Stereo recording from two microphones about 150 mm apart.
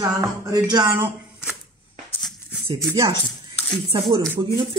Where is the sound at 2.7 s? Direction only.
20° right (ahead or behind).